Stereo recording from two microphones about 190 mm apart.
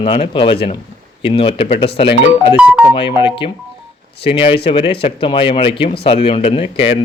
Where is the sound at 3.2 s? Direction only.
25° left (ahead or behind).